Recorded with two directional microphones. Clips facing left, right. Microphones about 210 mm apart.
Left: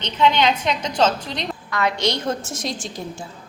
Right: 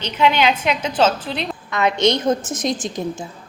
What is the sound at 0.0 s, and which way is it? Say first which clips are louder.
A woman's voice: right 1 dB; 10° right (ahead or behind).